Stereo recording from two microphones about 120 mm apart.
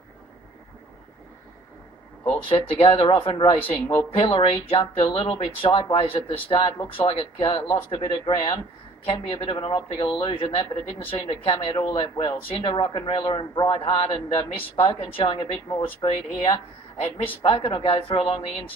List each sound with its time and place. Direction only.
2.2 s a man's voice: 50° left (ahead or behind)
14.9 s a man's voice: 55° left (ahead or behind)